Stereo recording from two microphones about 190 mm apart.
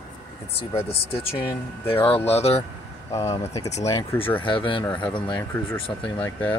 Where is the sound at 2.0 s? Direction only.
10° left (ahead or behind).